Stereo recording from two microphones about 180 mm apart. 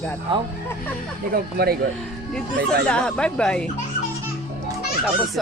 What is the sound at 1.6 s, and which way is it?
Speech, 60° right (ahead or behind).